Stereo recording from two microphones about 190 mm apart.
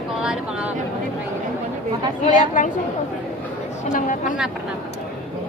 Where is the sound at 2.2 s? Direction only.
40° left (ahead or behind).